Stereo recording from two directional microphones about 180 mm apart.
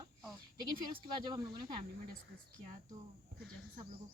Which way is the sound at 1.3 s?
25° right (ahead or behind).